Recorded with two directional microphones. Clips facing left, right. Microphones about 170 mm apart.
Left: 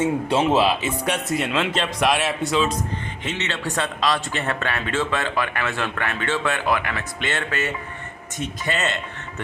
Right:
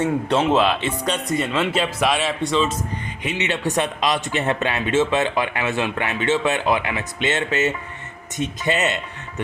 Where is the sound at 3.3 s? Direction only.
15° right (ahead or behind).